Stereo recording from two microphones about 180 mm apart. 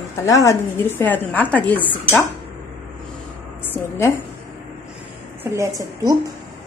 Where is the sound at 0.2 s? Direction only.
15° left (ahead or behind).